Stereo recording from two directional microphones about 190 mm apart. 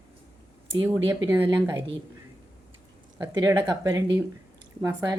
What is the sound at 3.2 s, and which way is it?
Speech, 20° right (ahead or behind).